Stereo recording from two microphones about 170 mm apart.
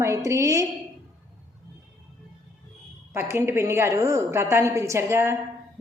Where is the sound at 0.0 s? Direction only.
20° right (ahead or behind).